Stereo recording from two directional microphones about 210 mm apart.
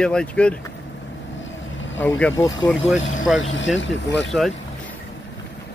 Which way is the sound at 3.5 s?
60° left (ahead or behind).